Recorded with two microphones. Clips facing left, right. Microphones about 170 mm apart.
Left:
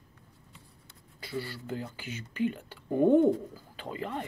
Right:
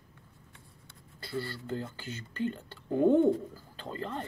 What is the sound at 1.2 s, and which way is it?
Speech, 10° left (ahead or behind).